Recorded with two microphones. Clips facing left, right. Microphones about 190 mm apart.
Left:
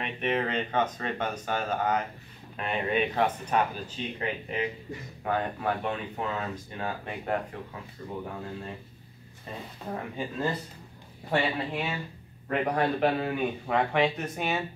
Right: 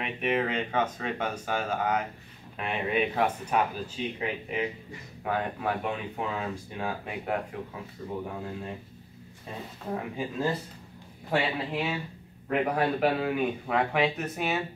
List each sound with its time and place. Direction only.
0.0 s speech: 5° right (ahead or behind)
9.9 s speech: 5° right (ahead or behind)